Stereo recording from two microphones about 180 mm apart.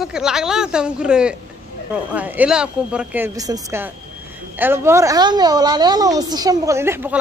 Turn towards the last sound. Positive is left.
turn(degrees=-15)  # may be behind; listen again after turning